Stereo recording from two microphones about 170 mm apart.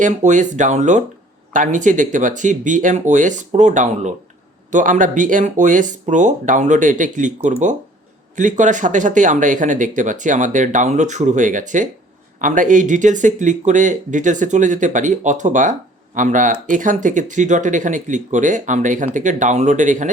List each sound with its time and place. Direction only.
0.0 s speech: 45° right (ahead or behind)